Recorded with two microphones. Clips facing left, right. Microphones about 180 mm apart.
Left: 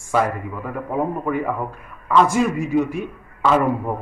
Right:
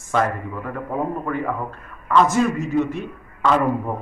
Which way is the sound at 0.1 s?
5° left (ahead or behind).